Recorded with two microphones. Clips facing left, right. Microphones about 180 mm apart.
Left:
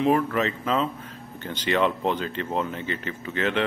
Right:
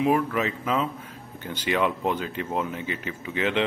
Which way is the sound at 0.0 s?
5° right (ahead or behind).